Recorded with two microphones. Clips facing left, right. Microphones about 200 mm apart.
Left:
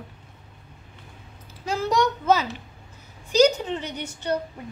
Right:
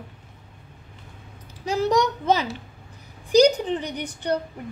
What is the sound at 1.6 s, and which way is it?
Speech, 15° right (ahead or behind).